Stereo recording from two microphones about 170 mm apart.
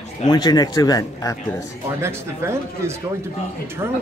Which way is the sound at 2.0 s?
15° right (ahead or behind).